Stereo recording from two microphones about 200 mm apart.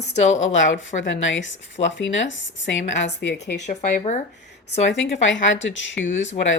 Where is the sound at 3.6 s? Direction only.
40° left (ahead or behind).